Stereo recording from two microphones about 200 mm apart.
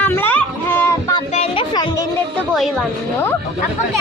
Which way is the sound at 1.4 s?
25° left (ahead or behind).